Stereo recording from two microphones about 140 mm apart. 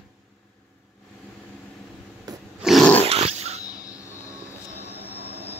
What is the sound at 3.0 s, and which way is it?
Dog, 45° right (ahead or behind).